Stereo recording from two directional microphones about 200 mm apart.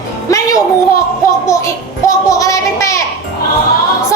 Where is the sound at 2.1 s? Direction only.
15° left (ahead or behind).